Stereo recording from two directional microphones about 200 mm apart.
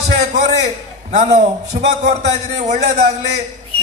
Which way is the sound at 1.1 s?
35° right (ahead or behind).